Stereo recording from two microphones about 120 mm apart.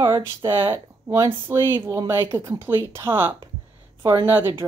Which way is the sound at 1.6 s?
40° right (ahead or behind).